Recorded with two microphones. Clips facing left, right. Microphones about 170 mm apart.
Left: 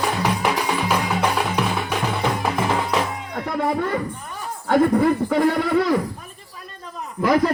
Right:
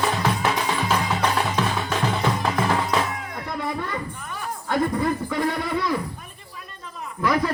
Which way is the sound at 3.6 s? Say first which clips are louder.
Left 7 dB; 45° left (ahead or behind).